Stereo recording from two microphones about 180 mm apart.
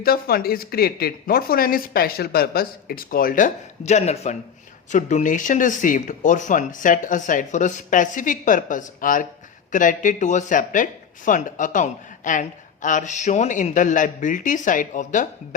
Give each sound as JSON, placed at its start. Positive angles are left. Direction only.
{"t": 0.0, "sound": "speech", "side_deg": 55}